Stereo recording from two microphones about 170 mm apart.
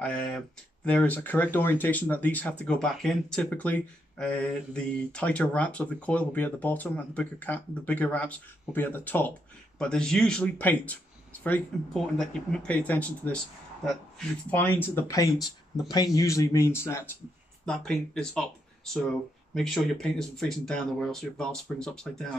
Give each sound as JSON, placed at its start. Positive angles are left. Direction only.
{"t": 0.0, "sound": "speech", "side_deg": 5}
{"t": 17.6, "sound": "speech", "side_deg": 5}
{"t": 19.5, "sound": "speech", "side_deg": 5}